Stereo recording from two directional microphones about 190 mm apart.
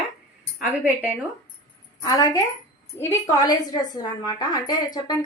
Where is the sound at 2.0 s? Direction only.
20° left (ahead or behind).